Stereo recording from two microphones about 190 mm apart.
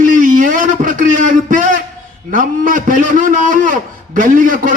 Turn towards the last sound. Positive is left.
turn(degrees=-45)  # may be behind; listen again after turning